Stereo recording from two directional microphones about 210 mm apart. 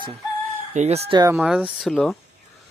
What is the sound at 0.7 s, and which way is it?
Speech, 30° right (ahead or behind).